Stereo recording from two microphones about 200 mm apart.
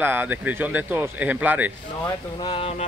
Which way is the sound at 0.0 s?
10° right (ahead or behind).